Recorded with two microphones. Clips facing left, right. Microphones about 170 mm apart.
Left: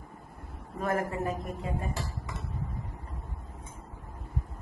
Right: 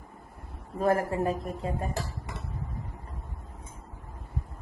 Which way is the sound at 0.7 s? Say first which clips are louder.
Right 5 dB; 30° right (ahead or behind).